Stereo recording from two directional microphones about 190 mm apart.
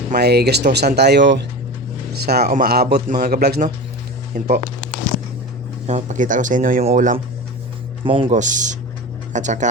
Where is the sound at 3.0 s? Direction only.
40° right (ahead or behind).